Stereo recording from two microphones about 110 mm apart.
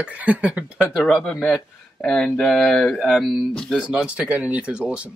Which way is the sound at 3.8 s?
10° right (ahead or behind).